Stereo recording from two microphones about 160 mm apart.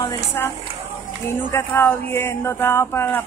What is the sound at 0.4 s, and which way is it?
Speech, 15° left (ahead or behind).